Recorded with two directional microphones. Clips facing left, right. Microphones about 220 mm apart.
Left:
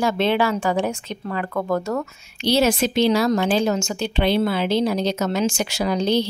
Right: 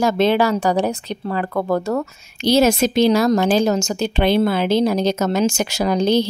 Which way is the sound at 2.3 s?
45° right (ahead or behind).